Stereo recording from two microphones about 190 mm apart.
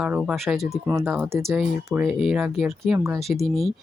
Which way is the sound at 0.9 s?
15° right (ahead or behind).